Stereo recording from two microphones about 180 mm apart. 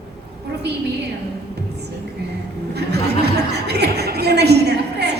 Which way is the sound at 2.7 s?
65° right (ahead or behind).